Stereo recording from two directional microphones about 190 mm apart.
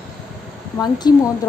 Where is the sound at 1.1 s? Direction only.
20° left (ahead or behind).